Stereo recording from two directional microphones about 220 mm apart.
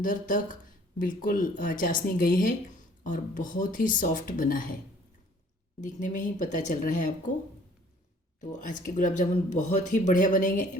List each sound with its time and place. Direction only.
0.0 s speech: 35° left (ahead or behind)
5.8 s speech: 35° left (ahead or behind)
8.4 s speech: 35° left (ahead or behind)